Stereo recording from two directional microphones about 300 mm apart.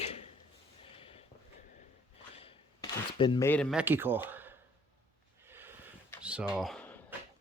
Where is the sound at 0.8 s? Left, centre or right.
Centre.